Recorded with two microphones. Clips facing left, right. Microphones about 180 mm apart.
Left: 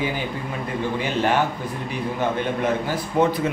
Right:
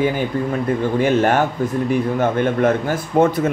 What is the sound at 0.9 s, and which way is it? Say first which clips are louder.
Speech: right 5 dB; 50° right (ahead or behind).